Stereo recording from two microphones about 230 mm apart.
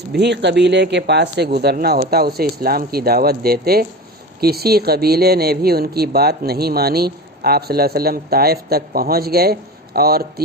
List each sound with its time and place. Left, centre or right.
0.1 s speech: right